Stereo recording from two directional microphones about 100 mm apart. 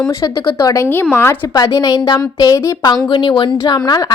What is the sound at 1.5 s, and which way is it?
Speech, 35° left (ahead or behind).